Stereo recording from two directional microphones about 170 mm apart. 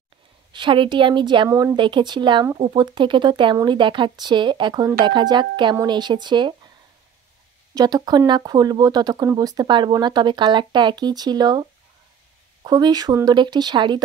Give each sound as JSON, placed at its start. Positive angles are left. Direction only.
{"t": 0.5, "sound": "speech", "side_deg": -30}
{"t": 7.7, "sound": "speech", "side_deg": -25}
{"t": 12.6, "sound": "speech", "side_deg": -25}